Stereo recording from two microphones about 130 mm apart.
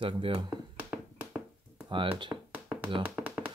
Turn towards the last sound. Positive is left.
turn(degrees=-10)  # may be behind; listen again after turning